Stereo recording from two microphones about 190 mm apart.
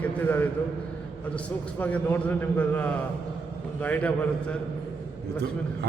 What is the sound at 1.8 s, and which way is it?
A man's voice, 10° left (ahead or behind).